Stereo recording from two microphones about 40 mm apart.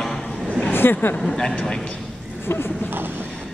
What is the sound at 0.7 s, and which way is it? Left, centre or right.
Speech, left.